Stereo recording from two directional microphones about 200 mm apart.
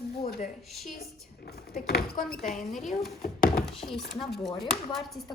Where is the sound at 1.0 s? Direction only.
50° left (ahead or behind).